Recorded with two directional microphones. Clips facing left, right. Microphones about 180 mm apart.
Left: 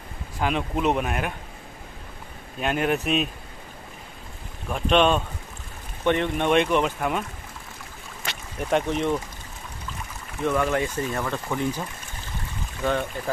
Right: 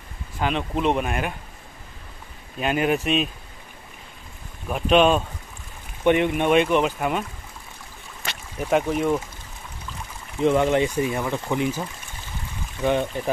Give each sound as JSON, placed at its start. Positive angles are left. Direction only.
{"t": 0.4, "sound": "speech", "side_deg": 5}
{"t": 2.6, "sound": "speech", "side_deg": 0}
{"t": 4.6, "sound": "speech", "side_deg": -5}
{"t": 8.6, "sound": "speech", "side_deg": -5}
{"t": 10.4, "sound": "speech", "side_deg": -25}
{"t": 12.8, "sound": "speech", "side_deg": -15}